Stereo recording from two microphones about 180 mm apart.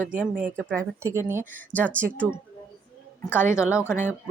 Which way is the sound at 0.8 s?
15° right (ahead or behind).